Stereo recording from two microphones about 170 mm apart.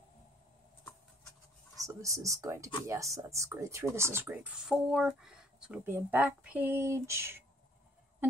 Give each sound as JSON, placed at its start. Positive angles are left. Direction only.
{"t": 1.8, "sound": "speech", "side_deg": -20}